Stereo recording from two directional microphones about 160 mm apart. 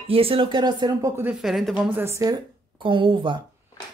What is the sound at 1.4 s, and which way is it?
A woman's voice, centre (ahead or behind).